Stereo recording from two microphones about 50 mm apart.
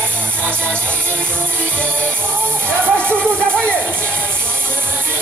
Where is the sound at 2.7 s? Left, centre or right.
Left.